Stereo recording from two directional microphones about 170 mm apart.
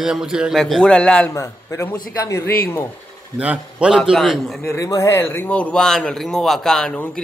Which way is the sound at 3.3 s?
5° right (ahead or behind).